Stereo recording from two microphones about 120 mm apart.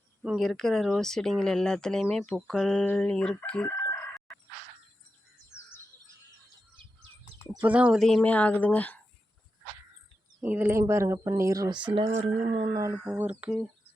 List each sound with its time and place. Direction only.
0.2 s a woman's voice: 5° right (ahead or behind)
7.6 s speech: 10° right (ahead or behind)
7.9 s a woman's voice: 5° left (ahead or behind)
10.4 s speech: 15° right (ahead or behind)
11.8 s speech: 45° right (ahead or behind)
12.1 s speech: 55° right (ahead or behind)
12.9 s speech: 15° right (ahead or behind)